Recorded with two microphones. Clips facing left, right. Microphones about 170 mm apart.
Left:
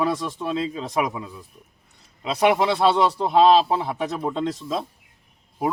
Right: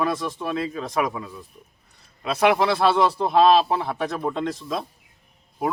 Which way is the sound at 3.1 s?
Centre (ahead or behind).